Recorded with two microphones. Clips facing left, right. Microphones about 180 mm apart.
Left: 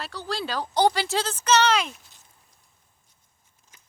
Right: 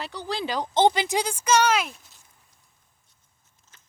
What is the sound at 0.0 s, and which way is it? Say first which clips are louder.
Speech: right 1 dB; 20° right (ahead or behind).